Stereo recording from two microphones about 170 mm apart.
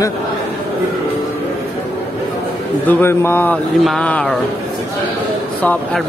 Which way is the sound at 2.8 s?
10° left (ahead or behind).